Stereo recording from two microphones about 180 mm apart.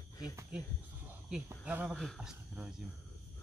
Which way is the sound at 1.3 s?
10° right (ahead or behind).